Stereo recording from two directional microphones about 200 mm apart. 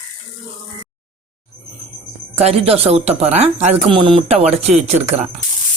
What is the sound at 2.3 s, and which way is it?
Speech, 30° right (ahead or behind).